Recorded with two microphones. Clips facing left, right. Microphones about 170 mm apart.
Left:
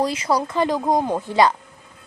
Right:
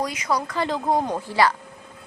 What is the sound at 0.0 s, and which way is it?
Speech, 30° left (ahead or behind).